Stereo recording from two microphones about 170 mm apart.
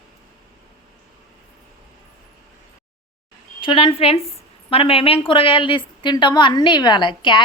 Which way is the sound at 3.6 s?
30° left (ahead or behind).